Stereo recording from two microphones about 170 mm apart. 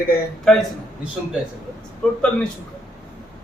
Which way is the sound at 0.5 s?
5° left (ahead or behind).